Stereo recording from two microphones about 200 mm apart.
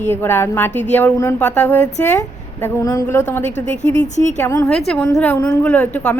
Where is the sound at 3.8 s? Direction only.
35° left (ahead or behind).